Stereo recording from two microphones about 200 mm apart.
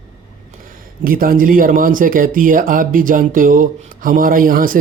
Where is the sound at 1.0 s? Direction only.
45° right (ahead or behind).